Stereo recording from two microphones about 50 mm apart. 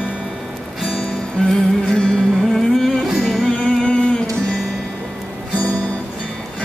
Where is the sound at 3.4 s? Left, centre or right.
Centre.